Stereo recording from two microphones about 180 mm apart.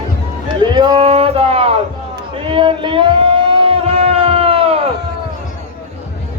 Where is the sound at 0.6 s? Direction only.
25° right (ahead or behind).